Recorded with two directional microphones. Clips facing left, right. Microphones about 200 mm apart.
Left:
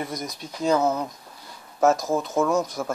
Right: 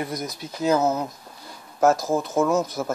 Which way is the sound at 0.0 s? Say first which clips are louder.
Right 2 dB; centre (ahead or behind).